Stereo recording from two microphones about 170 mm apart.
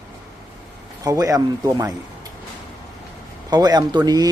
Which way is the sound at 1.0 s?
20° right (ahead or behind).